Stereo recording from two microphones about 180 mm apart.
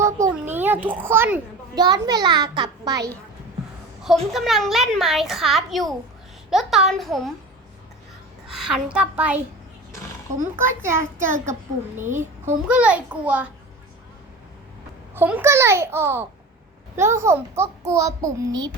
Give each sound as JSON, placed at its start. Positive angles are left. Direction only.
{"t": 0.0, "sound": "a sound", "side_deg": -15}
{"t": 1.7, "sound": "a child's voice", "side_deg": -20}
{"t": 4.3, "sound": "a child's voice", "side_deg": 0}
{"t": 8.4, "sound": "a child's voice", "side_deg": 0}
{"t": 10.4, "sound": "a child's voice", "side_deg": -15}
{"t": 15.1, "sound": "a child's voice", "side_deg": -10}